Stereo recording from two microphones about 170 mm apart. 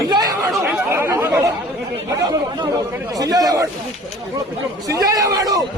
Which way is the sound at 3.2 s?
20° right (ahead or behind).